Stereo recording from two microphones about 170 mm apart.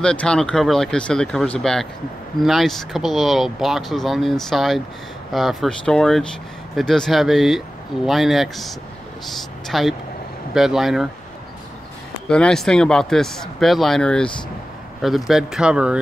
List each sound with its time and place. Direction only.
0.0 s speech: 5° left (ahead or behind)
12.3 s speech: 5° left (ahead or behind)